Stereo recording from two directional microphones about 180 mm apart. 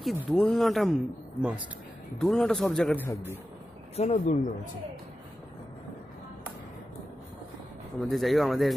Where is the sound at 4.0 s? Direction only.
40° left (ahead or behind).